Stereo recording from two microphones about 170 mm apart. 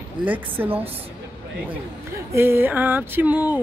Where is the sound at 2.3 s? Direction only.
15° right (ahead or behind).